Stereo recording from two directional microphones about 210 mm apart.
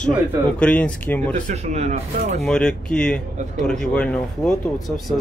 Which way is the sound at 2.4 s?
5° left (ahead or behind).